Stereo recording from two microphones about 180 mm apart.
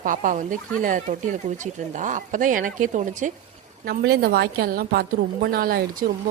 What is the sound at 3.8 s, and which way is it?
A woman's voice, 60° right (ahead or behind).